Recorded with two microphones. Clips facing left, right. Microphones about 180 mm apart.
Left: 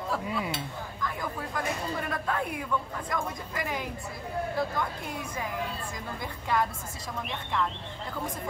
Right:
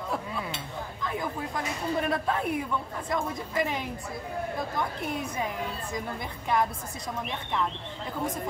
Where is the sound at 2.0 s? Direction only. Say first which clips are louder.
Right 3 dB; 20° right (ahead or behind).